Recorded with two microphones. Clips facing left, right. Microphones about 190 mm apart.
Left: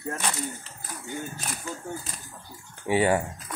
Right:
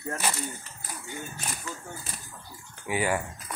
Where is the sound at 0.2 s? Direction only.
5° right (ahead or behind).